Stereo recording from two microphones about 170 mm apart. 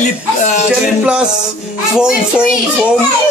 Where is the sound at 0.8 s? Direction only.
5° right (ahead or behind).